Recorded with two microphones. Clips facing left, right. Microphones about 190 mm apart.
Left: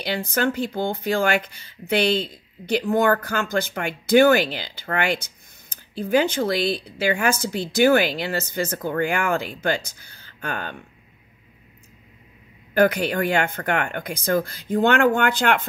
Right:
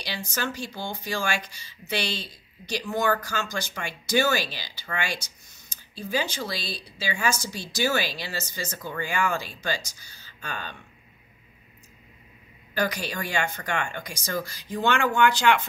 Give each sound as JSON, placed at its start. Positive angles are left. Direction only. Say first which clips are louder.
{"t": 0.0, "sound": "speech", "louder": "left 9 dB", "side_deg": 55}
{"t": 12.7, "sound": "speech", "louder": "left 9 dB", "side_deg": 55}